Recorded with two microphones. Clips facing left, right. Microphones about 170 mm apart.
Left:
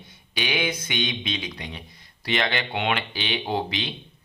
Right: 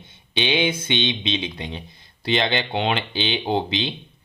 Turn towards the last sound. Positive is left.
turn(degrees=-25)  # may be behind; listen again after turning